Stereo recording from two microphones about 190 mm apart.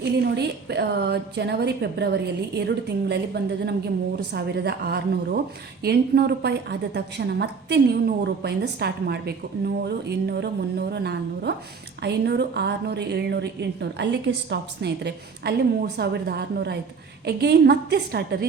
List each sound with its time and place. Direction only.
0.0 s a woman's voice: 60° right (ahead or behind)